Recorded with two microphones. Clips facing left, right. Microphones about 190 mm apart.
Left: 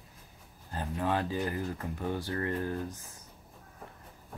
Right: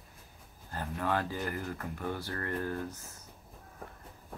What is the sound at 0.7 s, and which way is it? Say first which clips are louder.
Speech: left 1 dB; 20° left (ahead or behind).